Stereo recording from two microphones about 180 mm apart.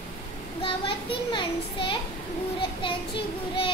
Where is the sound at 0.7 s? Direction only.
30° left (ahead or behind).